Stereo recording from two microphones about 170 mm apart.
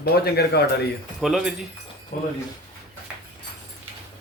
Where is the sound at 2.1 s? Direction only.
50° left (ahead or behind).